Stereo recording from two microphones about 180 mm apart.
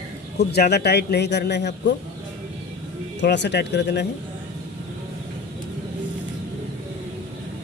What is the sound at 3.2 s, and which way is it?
Speech, 75° left (ahead or behind).